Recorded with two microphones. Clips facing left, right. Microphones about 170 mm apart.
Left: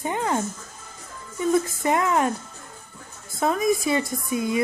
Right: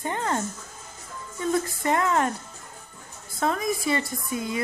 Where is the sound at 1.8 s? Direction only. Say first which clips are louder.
Right 1 dB; 10° left (ahead or behind).